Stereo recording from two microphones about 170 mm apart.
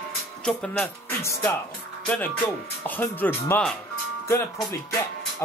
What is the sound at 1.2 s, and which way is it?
Speech, 15° left (ahead or behind).